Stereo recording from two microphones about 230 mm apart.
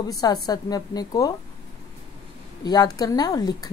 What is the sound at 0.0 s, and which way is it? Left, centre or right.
A woman's voice, centre.